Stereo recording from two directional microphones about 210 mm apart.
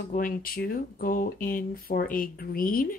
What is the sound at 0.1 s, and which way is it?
Speech, 40° left (ahead or behind).